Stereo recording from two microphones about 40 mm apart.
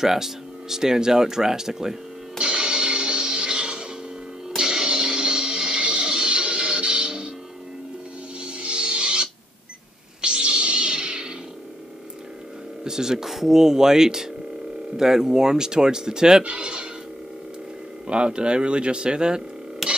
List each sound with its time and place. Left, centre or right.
0.0 s a sound: centre
4.6 s music: centre
8.4 s music: right
12.8 s speech: centre
18.0 s speech: right
19.8 s a sound: centre